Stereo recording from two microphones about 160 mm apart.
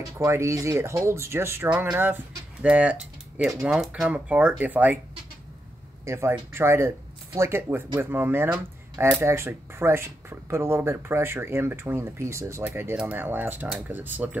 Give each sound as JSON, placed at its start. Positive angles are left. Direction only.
{"t": 0.2, "sound": "speech", "side_deg": -20}
{"t": 6.0, "sound": "speech", "side_deg": -15}